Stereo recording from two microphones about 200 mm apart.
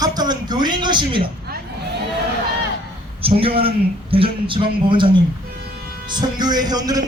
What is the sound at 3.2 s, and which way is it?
A man's voice, 25° right (ahead or behind).